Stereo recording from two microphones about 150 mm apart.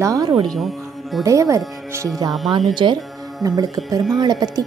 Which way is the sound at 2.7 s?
30° right (ahead or behind).